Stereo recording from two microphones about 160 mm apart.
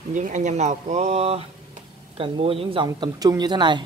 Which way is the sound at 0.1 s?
50° right (ahead or behind).